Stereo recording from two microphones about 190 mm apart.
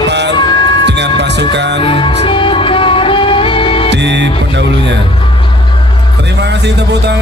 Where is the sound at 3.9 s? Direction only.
65° right (ahead or behind).